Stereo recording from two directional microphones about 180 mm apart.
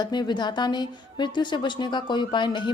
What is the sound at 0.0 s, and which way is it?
Speech, 25° left (ahead or behind).